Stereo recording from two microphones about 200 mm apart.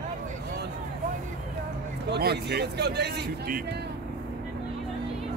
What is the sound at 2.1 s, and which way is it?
Speech, 55° right (ahead or behind).